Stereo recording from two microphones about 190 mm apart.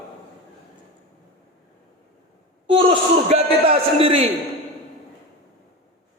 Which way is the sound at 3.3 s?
30° right (ahead or behind).